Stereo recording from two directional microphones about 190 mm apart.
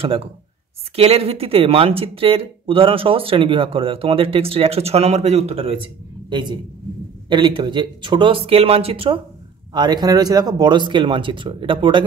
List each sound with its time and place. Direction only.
0.0 s speech: 30° right (ahead or behind)